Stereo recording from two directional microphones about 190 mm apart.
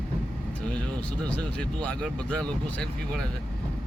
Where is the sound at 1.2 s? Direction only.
5° left (ahead or behind).